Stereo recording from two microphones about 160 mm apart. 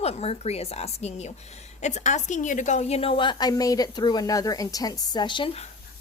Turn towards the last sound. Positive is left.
turn(degrees=30)  # may be behind; listen again after turning